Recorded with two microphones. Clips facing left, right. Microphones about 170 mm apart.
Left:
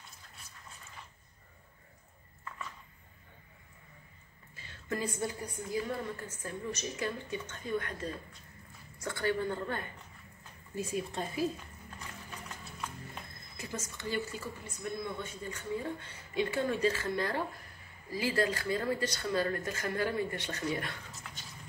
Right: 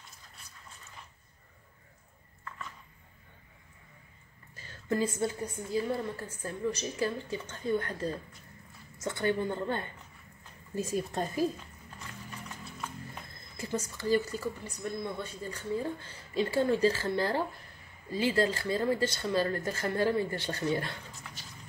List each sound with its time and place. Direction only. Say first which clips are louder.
4.6 s a sound: right 7 dB; 40° right (ahead or behind)
4.9 s a woman's voice: right 5 dB; 25° right (ahead or behind)
8.9 s speech: right 3 dB; 20° right (ahead or behind)
10.8 s a woman's voice: right 3 dB; 40° right (ahead or behind)
13.6 s a woman's voice: right 6 dB; 30° right (ahead or behind)